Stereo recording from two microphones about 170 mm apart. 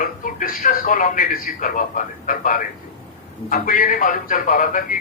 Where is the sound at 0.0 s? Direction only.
55° left (ahead or behind).